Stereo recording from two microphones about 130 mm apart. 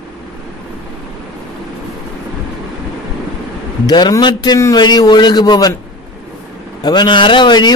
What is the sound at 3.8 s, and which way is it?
A man's voice, 30° left (ahead or behind).